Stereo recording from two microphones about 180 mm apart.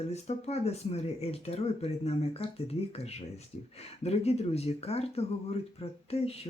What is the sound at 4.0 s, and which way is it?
Speech, 35° left (ahead or behind).